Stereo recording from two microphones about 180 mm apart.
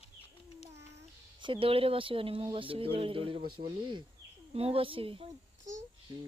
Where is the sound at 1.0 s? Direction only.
30° right (ahead or behind).